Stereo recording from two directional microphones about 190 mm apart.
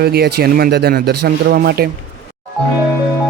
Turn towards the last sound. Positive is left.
turn(degrees=-55)  # may be behind; listen again after turning